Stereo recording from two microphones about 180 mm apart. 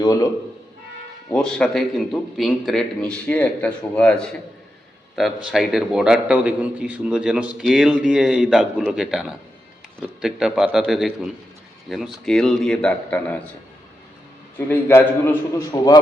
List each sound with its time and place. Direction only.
0.0 s speech: 20° left (ahead or behind)
1.3 s a man's voice: 5° left (ahead or behind)
14.7 s a man's voice: 10° left (ahead or behind)